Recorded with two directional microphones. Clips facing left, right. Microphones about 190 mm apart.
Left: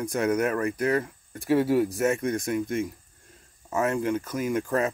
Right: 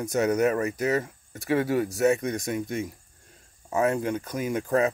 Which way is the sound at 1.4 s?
5° left (ahead or behind).